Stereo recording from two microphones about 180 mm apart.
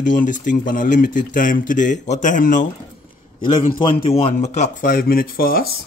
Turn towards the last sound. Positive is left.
turn(degrees=55)  # may be behind; listen again after turning